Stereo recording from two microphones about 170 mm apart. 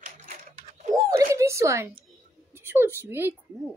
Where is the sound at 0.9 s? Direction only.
20° right (ahead or behind).